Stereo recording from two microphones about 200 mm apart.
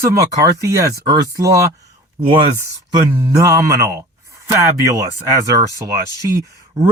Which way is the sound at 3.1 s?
15° right (ahead or behind).